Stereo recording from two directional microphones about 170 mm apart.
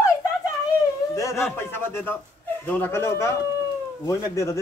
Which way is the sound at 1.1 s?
15° left (ahead or behind).